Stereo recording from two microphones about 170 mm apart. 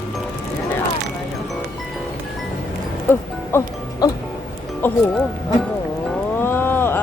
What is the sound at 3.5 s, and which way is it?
Speech, 15° left (ahead or behind).